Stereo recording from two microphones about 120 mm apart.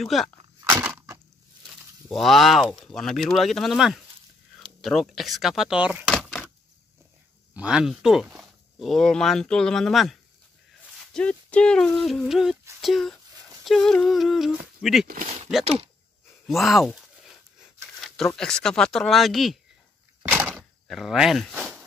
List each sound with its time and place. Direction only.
0.0 s speech: centre (ahead or behind)
0.8 s crushing: 25° right (ahead or behind)
2.0 s speech: centre (ahead or behind)
7.5 s speech: 5° right (ahead or behind)
11.1 s speech: 10° left (ahead or behind)
15.6 s speech: 55° right (ahead or behind)
16.4 s speech: centre (ahead or behind)
20.2 s door: 15° right (ahead or behind)
20.5 s speech: centre (ahead or behind)
21.5 s a sound: 10° right (ahead or behind)